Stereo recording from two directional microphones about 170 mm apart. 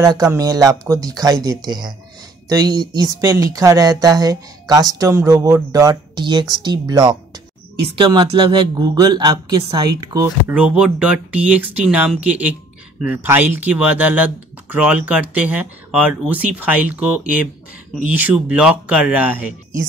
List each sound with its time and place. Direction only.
0.0 s speech: 20° right (ahead or behind)
10.5 s speech: 5° right (ahead or behind)